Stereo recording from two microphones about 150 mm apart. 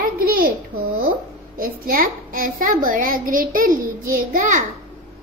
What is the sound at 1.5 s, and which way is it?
A child's voice, 70° right (ahead or behind).